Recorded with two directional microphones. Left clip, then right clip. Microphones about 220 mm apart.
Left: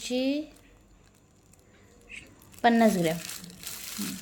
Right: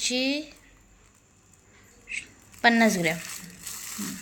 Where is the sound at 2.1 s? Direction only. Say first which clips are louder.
Right 10 dB; 10° left (ahead or behind).